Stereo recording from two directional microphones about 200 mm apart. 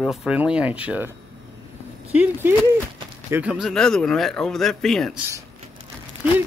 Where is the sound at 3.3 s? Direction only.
5° right (ahead or behind).